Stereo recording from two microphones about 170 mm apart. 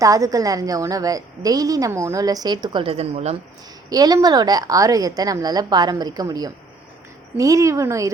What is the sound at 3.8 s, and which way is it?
A woman's voice, 25° right (ahead or behind).